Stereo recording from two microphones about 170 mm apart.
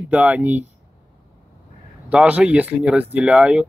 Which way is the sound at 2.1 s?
5° right (ahead or behind).